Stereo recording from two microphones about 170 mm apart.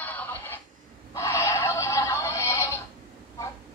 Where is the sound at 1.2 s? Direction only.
15° left (ahead or behind).